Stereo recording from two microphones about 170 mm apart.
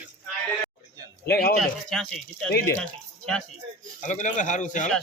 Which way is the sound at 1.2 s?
65° left (ahead or behind).